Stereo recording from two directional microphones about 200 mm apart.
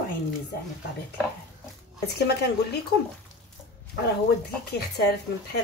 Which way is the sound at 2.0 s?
55° left (ahead or behind).